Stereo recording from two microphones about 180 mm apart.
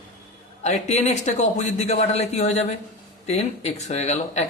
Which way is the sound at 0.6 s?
40° left (ahead or behind).